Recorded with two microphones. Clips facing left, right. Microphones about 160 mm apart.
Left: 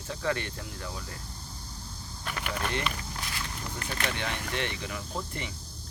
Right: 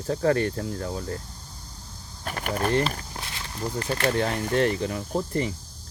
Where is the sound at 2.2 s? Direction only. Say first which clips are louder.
Right 6 dB; 45° right (ahead or behind).